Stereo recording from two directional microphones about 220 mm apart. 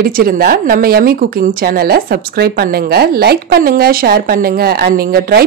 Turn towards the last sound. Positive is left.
turn(degrees=-45)  # may be behind; listen again after turning